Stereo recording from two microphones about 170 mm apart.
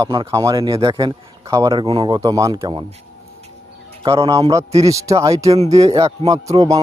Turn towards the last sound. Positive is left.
turn(degrees=-25)  # may be behind; listen again after turning